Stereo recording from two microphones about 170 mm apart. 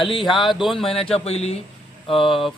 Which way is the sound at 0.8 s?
35° left (ahead or behind).